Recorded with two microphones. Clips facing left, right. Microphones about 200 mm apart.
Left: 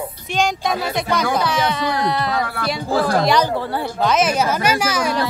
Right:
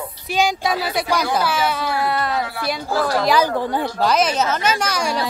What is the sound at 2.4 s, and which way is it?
Speech, 55° left (ahead or behind).